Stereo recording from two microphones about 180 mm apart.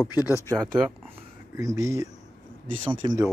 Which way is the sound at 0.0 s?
20° left (ahead or behind).